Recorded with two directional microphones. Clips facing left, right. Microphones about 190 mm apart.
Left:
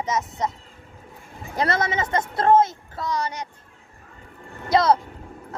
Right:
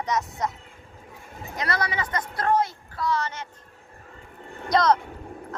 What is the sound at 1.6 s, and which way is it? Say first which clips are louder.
A woman's voice: left 5 dB; 25° left (ahead or behind).